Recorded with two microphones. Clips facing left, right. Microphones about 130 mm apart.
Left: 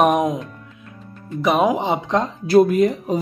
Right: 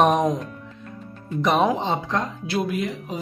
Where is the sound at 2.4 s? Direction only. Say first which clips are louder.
Left 11 dB; 40° left (ahead or behind).